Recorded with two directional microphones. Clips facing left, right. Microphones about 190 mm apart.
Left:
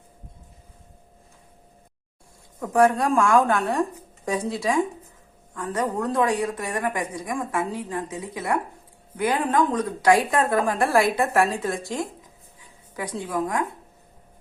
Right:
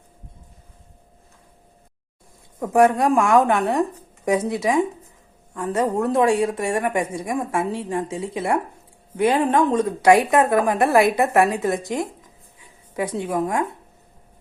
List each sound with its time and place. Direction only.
2.6 s a woman's voice: 20° right (ahead or behind)